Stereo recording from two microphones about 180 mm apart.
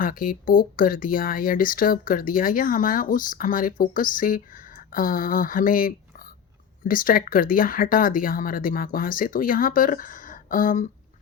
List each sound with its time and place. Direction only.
0.0 s speech: 50° left (ahead or behind)